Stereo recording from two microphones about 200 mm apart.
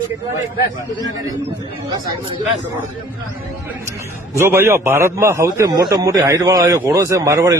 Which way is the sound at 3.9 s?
10° right (ahead or behind).